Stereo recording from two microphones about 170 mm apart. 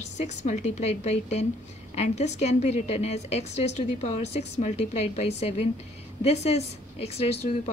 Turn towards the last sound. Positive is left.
turn(degrees=35)  # may be behind; listen again after turning